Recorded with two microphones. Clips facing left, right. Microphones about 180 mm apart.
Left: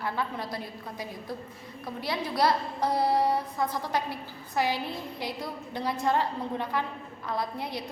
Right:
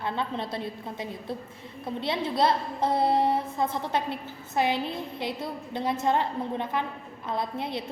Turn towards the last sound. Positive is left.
turn(degrees=-25)  # may be behind; listen again after turning